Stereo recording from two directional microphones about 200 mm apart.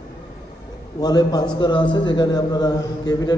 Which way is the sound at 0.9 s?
20° left (ahead or behind).